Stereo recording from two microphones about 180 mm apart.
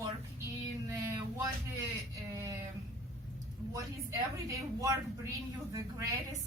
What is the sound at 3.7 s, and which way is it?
A woman's voice, 15° right (ahead or behind).